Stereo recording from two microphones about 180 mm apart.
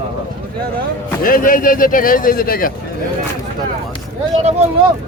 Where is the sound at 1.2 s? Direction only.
50° left (ahead or behind).